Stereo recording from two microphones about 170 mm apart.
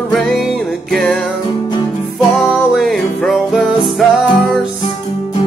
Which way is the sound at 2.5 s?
Centre (ahead or behind).